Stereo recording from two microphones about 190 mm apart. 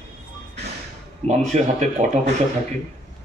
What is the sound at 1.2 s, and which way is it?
Speech, 35° right (ahead or behind).